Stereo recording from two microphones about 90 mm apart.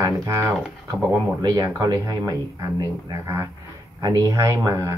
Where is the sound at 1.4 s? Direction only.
50° right (ahead or behind).